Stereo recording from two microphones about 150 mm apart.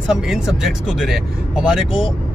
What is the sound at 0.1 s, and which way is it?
Speech, 5° right (ahead or behind).